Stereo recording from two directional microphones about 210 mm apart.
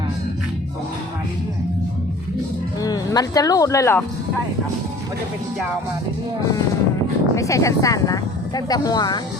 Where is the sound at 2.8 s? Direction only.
15° left (ahead or behind).